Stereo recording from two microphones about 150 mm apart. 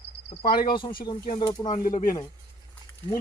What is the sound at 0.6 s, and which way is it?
Speech, 35° left (ahead or behind).